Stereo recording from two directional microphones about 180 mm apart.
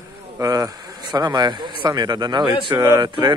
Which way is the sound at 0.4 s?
20° right (ahead or behind).